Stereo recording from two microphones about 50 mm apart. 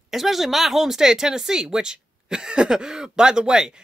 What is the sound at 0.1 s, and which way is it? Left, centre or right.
Speech, centre.